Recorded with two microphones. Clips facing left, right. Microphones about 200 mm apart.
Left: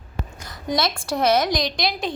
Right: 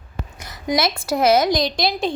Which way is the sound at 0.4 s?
20° right (ahead or behind).